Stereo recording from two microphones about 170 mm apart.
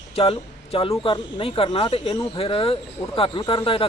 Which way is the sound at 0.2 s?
35° left (ahead or behind).